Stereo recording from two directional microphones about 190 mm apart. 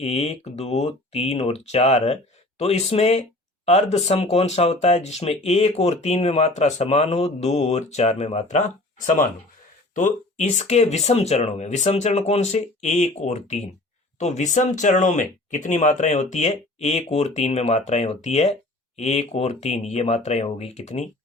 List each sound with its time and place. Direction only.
0.0 s speech: 35° left (ahead or behind)